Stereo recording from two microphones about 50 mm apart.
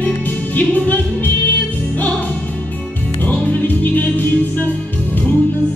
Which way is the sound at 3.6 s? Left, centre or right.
Left.